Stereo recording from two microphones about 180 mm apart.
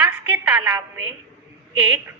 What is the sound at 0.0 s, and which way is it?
A woman's voice, 5° right (ahead or behind).